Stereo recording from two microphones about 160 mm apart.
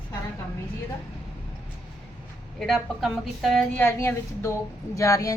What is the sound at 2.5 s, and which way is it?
A woman's voice, centre (ahead or behind).